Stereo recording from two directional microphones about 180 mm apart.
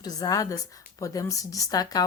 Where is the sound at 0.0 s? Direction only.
20° left (ahead or behind).